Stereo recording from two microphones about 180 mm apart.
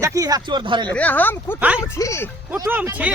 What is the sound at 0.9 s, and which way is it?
Speech, 10° left (ahead or behind).